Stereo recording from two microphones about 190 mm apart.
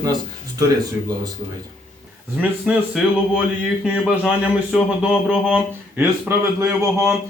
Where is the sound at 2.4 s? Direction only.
5° right (ahead or behind).